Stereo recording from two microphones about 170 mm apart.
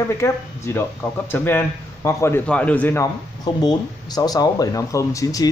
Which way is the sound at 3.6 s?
25° left (ahead or behind).